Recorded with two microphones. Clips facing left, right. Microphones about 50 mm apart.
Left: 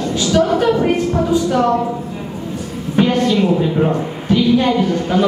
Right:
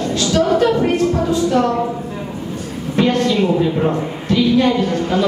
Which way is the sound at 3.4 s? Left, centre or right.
Centre.